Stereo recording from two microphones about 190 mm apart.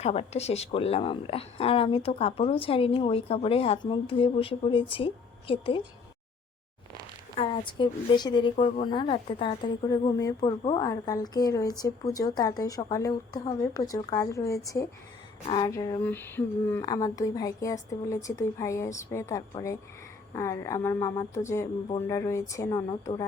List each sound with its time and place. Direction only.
0.0 s a woman's voice: 35° left (ahead or behind)
7.3 s a woman's voice: 25° left (ahead or behind)